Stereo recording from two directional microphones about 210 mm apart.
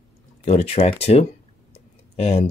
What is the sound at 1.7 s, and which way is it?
Clicking, 30° left (ahead or behind).